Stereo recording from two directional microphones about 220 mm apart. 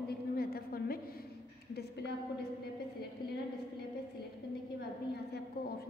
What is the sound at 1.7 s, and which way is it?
Speech, 50° left (ahead or behind).